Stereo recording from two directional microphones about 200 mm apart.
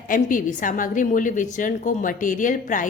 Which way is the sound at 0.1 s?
40° left (ahead or behind).